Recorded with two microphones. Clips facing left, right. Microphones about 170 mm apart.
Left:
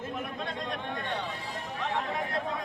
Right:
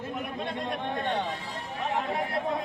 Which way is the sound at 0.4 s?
25° right (ahead or behind).